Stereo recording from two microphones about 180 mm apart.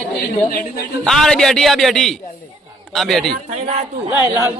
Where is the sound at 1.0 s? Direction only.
Centre (ahead or behind).